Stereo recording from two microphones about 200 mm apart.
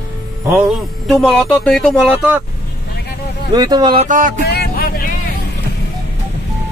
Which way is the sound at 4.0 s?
40° right (ahead or behind).